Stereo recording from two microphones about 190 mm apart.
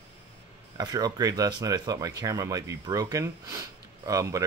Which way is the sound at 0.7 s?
20° right (ahead or behind).